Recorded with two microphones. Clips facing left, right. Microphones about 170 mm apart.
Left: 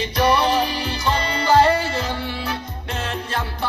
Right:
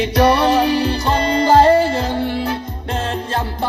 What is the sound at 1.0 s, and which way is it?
Music, 40° right (ahead or behind).